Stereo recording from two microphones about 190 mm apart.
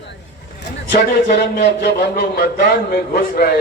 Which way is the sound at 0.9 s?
55° left (ahead or behind).